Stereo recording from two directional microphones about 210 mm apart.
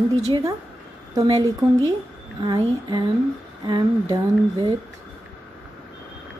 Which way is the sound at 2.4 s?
20° right (ahead or behind).